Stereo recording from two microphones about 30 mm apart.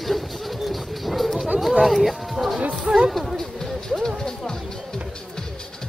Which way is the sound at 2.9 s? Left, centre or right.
Right.